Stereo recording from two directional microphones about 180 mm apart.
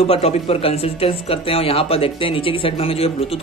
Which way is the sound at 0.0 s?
35° left (ahead or behind).